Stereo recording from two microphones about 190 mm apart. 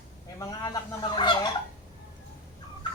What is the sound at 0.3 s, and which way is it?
Speech, 20° left (ahead or behind).